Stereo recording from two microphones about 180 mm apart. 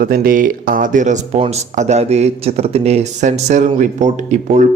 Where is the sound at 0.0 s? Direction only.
55° right (ahead or behind).